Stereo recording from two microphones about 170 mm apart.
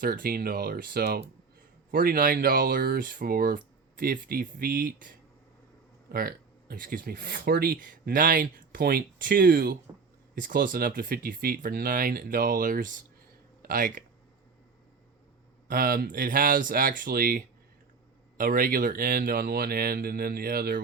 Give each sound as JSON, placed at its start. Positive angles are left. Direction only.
{"t": 0.0, "sound": "speech", "side_deg": -55}
{"t": 15.7, "sound": "speech", "side_deg": -60}